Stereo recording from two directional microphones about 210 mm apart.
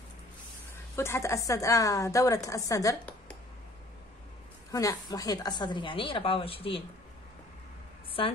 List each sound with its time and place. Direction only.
0.9 s a woman's voice: 10° left (ahead or behind)
4.6 s a woman's voice: 15° left (ahead or behind)